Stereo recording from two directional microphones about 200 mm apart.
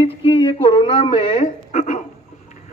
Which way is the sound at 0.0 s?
25° left (ahead or behind).